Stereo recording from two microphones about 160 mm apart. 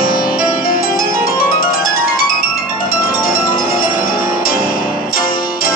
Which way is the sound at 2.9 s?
65° left (ahead or behind).